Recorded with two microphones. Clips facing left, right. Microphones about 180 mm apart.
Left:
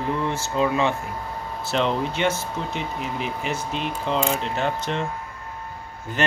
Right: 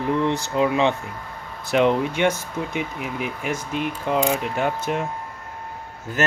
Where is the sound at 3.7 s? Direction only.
10° right (ahead or behind).